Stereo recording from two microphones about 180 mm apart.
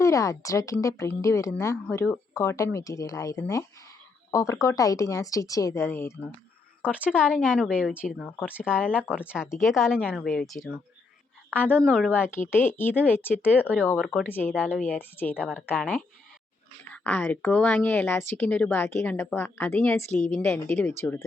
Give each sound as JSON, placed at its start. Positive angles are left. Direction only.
{"t": 0.0, "sound": "speech", "side_deg": 15}
{"t": 6.8, "sound": "a woman's voice", "side_deg": -5}
{"t": 13.6, "sound": "speech", "side_deg": -10}
{"t": 13.8, "sound": "a woman's voice", "side_deg": 5}